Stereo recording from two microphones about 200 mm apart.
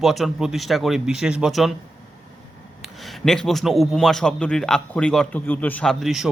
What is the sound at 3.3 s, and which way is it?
A man's voice, centre (ahead or behind).